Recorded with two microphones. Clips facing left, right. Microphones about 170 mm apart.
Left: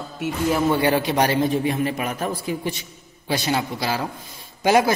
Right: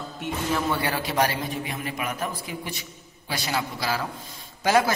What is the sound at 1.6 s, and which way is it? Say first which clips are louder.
A man's voice: left 8 dB; 35° left (ahead or behind).